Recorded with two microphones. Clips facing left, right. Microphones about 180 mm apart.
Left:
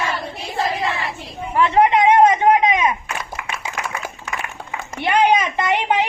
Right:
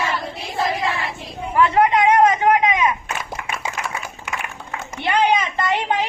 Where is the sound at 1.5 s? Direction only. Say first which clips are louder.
Left 1 dB; 25° left (ahead or behind).